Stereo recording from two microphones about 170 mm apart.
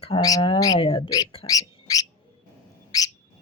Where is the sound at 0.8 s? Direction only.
35° left (ahead or behind).